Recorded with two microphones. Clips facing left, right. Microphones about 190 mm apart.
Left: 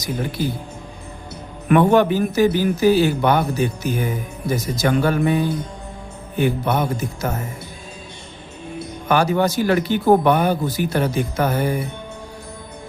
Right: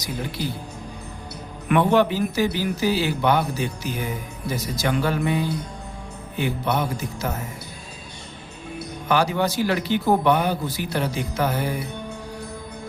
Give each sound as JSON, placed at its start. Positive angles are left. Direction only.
{"t": 0.0, "sound": "speech", "side_deg": 50}
{"t": 1.6, "sound": "speech", "side_deg": 45}
{"t": 9.0, "sound": "speech", "side_deg": 50}